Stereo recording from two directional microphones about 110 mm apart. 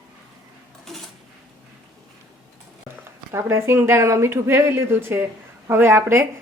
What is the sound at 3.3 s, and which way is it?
Speech, 25° right (ahead or behind).